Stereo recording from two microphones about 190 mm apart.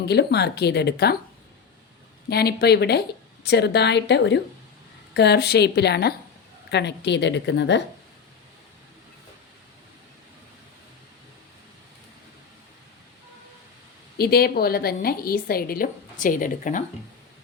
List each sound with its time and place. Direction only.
0.0 s speech: 60° left (ahead or behind)
2.3 s a woman's voice: 55° left (ahead or behind)
14.2 s a woman's voice: 55° left (ahead or behind)